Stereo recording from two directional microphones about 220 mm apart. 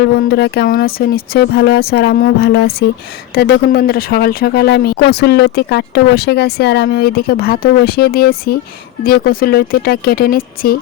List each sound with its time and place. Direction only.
0.0 s speech: 50° left (ahead or behind)